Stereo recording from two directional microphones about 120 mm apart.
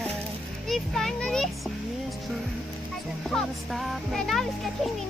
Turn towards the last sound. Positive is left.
turn(degrees=0)  # may be behind; listen again after turning